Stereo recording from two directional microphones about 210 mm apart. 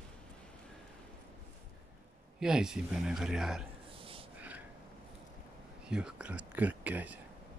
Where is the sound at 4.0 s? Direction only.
25° right (ahead or behind).